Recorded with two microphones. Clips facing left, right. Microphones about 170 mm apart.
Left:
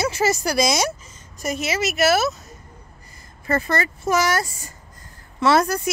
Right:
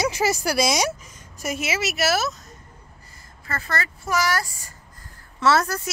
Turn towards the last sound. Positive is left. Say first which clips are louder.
# left 3 dB
turn(degrees=15)  # may be behind; listen again after turning